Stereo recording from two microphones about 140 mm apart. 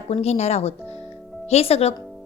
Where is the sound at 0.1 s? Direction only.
50° left (ahead or behind).